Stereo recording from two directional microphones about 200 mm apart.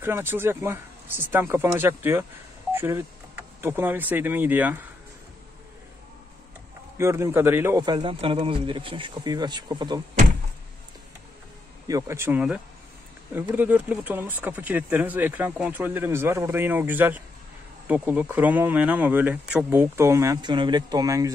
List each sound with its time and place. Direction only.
0.0 s speech: 10° right (ahead or behind)
7.0 s a man's voice: 15° right (ahead or behind)
11.9 s speech: 15° right (ahead or behind)